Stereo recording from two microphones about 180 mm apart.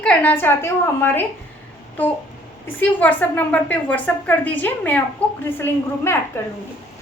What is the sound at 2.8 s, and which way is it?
A woman's voice, 10° left (ahead or behind).